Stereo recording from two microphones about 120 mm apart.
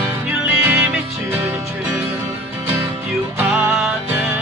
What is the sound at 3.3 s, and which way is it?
Music, 10° right (ahead or behind).